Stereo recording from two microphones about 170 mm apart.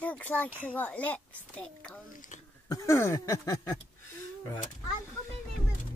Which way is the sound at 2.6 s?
20° left (ahead or behind).